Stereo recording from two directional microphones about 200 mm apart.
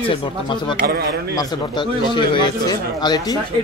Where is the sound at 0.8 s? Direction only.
50° right (ahead or behind).